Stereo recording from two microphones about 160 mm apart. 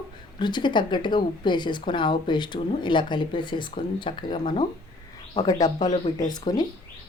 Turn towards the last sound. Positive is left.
turn(degrees=25)  # may be behind; listen again after turning